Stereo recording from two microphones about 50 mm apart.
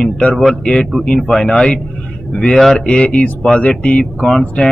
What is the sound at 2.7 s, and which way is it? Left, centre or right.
A man's voice, centre.